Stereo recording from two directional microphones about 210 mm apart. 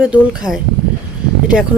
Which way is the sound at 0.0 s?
5° right (ahead or behind).